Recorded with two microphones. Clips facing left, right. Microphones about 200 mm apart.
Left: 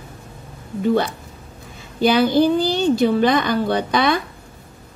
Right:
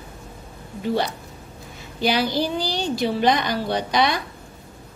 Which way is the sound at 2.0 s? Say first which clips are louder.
Left 7 dB; 55° left (ahead or behind).